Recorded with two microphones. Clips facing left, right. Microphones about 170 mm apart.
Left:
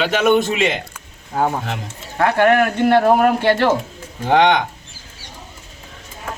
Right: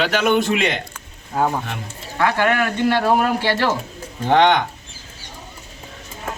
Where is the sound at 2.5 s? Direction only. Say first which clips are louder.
Left 5 dB; 50° left (ahead or behind).